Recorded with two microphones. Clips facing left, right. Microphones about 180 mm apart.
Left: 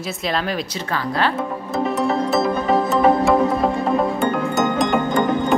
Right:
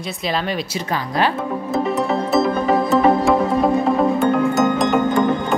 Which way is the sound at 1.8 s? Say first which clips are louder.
Left 3 dB; centre (ahead or behind).